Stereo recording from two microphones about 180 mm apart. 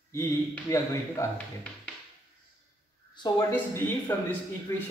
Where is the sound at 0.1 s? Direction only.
15° left (ahead or behind).